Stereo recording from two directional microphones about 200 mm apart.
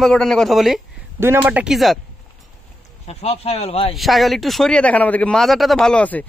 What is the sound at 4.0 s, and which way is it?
Speech, centre (ahead or behind).